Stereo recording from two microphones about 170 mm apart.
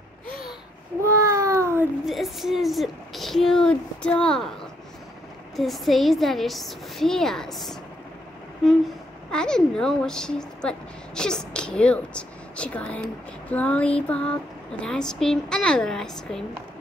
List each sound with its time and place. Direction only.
1.0 s a sound: 20° right (ahead or behind)
2.0 s a woman's voice: centre (ahead or behind)
5.6 s speech: centre (ahead or behind)
9.3 s speech: 5° left (ahead or behind)